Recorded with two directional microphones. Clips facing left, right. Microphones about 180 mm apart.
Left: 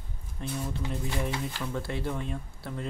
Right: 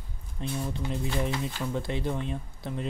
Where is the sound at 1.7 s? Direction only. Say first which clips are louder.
Right 2 dB; 20° right (ahead or behind).